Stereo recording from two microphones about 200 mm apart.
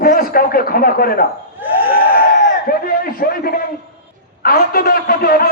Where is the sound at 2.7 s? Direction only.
45° left (ahead or behind).